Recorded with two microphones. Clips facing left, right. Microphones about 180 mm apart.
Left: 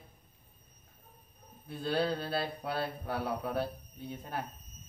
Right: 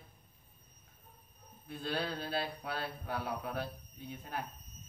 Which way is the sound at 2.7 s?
35° left (ahead or behind).